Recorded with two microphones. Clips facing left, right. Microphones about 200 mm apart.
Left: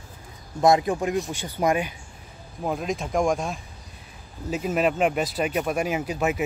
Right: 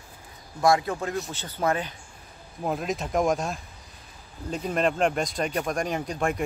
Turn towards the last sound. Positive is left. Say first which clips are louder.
# left 2 dB
turn(degrees=5)  # may be behind; listen again after turning